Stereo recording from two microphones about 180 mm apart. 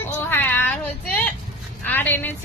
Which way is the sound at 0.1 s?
10° left (ahead or behind).